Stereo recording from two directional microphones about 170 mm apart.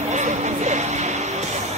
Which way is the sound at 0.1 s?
45° right (ahead or behind).